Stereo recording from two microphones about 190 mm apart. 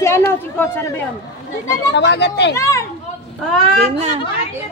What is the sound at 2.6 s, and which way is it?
Speech, 15° left (ahead or behind).